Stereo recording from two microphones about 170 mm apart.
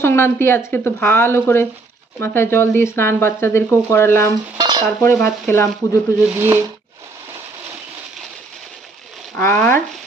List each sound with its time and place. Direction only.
0.0 s speech: 15° left (ahead or behind)
4.5 s stir: 25° right (ahead or behind)
5.0 s speech: 15° left (ahead or behind)
6.2 s speech: 15° right (ahead or behind)
9.4 s speech: 10° left (ahead or behind)